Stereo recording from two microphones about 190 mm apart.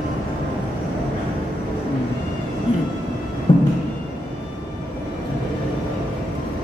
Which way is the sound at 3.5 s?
25° left (ahead or behind).